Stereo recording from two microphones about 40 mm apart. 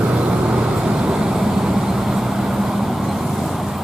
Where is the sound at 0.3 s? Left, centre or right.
Right; by 3.6 s centre.